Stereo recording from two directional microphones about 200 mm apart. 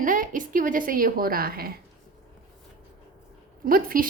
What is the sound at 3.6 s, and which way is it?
Speech, 45° right (ahead or behind).